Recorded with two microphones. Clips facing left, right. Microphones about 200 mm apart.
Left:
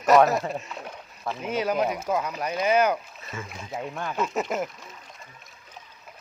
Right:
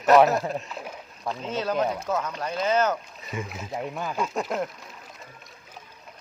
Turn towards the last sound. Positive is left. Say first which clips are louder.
# left 1 dB
turn(degrees=0)  # may be behind; listen again after turning